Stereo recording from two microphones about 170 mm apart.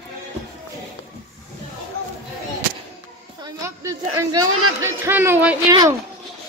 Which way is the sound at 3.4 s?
20° right (ahead or behind).